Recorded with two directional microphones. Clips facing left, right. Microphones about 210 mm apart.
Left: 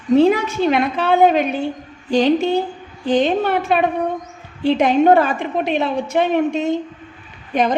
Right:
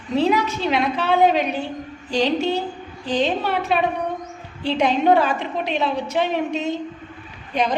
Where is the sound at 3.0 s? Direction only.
50° left (ahead or behind).